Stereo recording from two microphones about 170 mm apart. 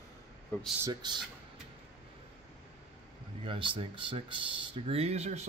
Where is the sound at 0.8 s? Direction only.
25° right (ahead or behind).